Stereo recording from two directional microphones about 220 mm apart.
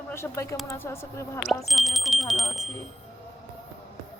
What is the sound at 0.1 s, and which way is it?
A woman's voice, 10° left (ahead or behind).